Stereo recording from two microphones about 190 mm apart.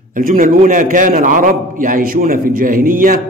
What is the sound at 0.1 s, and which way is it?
A man's voice, 45° right (ahead or behind).